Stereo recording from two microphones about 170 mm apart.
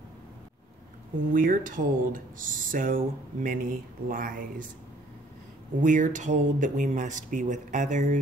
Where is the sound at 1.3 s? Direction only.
55° right (ahead or behind).